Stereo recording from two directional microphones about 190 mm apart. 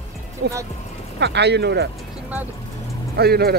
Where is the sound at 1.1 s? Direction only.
65° right (ahead or behind).